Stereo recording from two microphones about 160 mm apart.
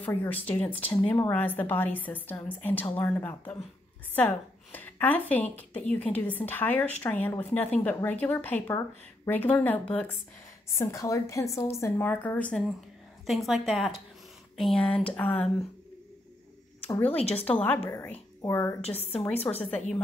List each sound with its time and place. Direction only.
0.0 s a woman's voice: 10° left (ahead or behind)
4.7 s a woman's voice: 10° left (ahead or behind)
16.8 s a woman's voice: 10° left (ahead or behind)
18.8 s a woman's voice: 40° left (ahead or behind)
19.6 s a woman's voice: 5° left (ahead or behind)